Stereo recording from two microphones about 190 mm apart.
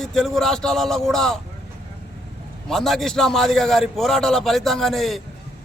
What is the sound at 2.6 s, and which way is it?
A man's voice, centre (ahead or behind).